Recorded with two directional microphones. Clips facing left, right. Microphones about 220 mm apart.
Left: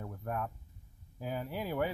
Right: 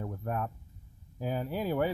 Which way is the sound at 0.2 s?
35° right (ahead or behind).